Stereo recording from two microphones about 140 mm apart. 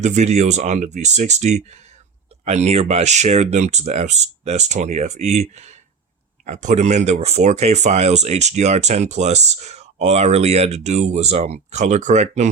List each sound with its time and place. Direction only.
0.0 s speech: 55° right (ahead or behind)